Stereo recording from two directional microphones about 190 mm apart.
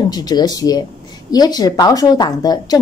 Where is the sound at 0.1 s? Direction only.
20° left (ahead or behind).